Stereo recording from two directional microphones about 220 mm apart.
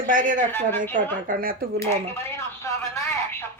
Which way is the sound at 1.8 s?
10° left (ahead or behind).